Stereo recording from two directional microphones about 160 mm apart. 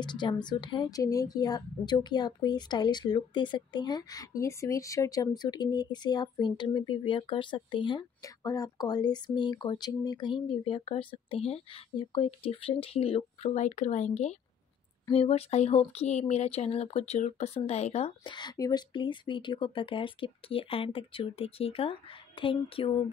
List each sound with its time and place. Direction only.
0.0 s a woman's voice: 30° left (ahead or behind)
18.2 s speech: 30° left (ahead or behind)